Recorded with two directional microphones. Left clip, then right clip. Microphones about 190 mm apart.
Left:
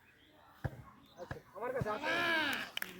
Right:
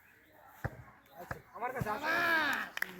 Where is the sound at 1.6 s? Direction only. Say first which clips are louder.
Right 1 dB; 60° right (ahead or behind).